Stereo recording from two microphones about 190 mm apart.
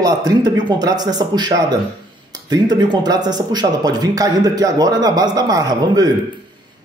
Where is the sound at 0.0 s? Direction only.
20° right (ahead or behind).